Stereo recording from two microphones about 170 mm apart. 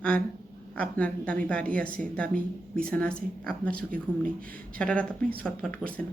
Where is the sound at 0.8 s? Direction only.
10° left (ahead or behind).